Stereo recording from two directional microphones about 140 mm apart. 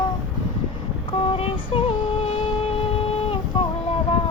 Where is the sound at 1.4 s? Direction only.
45° left (ahead or behind).